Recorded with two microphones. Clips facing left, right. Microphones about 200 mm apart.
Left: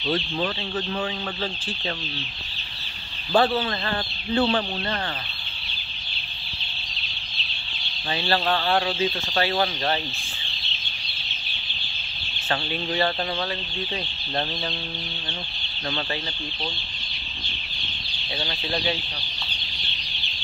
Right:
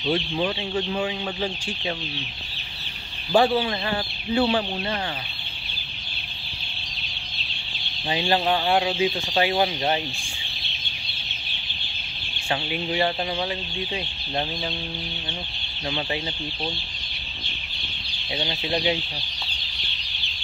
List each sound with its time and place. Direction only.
0.0 s speech: 15° right (ahead or behind)
3.3 s speech: 10° right (ahead or behind)
8.1 s speech: 15° right (ahead or behind)
12.4 s speech: 15° right (ahead or behind)
18.4 s chicken: 20° right (ahead or behind)